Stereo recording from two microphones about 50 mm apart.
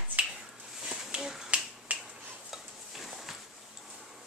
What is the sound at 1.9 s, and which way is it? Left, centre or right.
Finger snapping, right.